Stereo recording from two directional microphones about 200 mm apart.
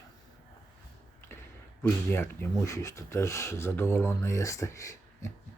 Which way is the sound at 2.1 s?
10° left (ahead or behind).